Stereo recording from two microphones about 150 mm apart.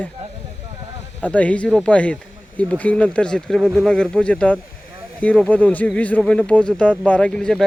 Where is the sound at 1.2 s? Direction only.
10° left (ahead or behind).